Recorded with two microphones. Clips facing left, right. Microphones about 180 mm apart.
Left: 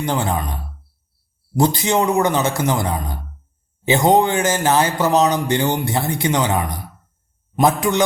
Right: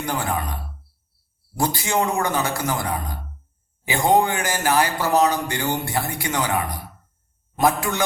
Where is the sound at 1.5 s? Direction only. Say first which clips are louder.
Left 5 dB; 20° left (ahead or behind).